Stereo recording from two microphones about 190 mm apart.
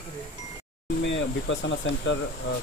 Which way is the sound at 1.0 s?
70° left (ahead or behind).